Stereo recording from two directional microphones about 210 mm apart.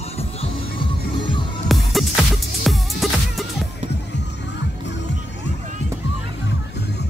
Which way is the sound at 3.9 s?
55° left (ahead or behind).